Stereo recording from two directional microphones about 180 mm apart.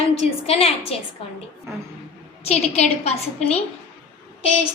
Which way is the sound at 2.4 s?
35° left (ahead or behind).